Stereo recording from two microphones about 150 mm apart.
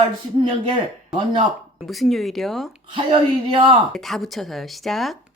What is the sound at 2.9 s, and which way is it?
Speech, 35° right (ahead or behind).